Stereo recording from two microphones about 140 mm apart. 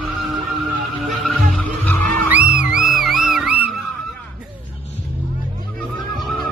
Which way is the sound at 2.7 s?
5° right (ahead or behind).